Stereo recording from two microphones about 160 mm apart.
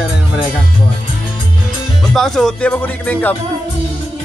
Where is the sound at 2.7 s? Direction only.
10° left (ahead or behind).